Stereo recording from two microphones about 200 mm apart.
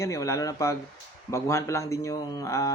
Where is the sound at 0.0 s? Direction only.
15° left (ahead or behind).